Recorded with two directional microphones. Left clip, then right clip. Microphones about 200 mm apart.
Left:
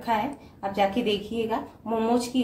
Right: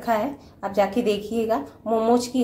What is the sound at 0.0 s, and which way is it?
Speech, 30° right (ahead or behind).